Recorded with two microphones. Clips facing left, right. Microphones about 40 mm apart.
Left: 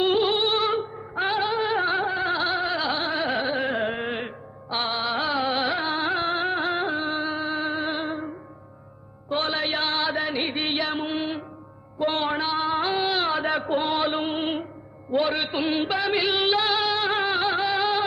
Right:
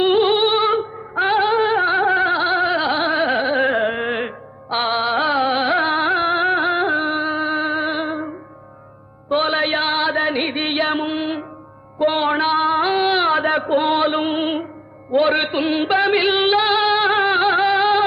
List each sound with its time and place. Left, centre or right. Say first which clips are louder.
0.0 s music: right 6 dB; right
2.3 s a sound: right 7 dB; right
9.3 s music: right 7 dB; right
11.9 s a sound: right 7 dB; right
15.1 s a man's voice: right 7 dB; right
16.0 s music: right 7 dB; right